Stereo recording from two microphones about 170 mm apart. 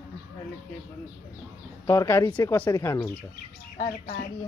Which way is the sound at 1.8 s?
15° left (ahead or behind).